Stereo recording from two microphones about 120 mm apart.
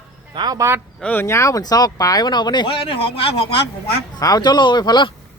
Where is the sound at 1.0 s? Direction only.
15° left (ahead or behind); by 3.6 s 50° left (ahead or behind).